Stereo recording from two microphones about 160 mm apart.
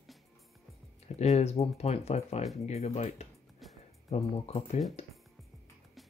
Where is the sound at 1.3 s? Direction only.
40° left (ahead or behind).